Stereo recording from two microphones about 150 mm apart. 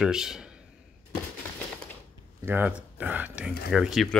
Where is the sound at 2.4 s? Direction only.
15° right (ahead or behind).